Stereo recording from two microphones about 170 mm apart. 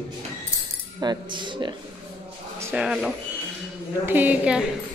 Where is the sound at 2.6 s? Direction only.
10° right (ahead or behind).